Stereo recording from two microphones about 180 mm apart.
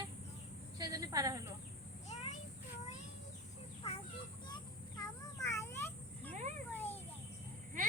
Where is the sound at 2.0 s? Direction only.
35° left (ahead or behind).